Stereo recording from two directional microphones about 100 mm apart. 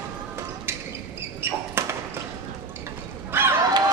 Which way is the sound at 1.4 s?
25° right (ahead or behind).